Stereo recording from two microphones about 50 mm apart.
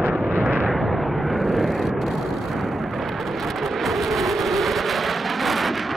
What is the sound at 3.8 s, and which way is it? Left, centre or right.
Vehicle, centre.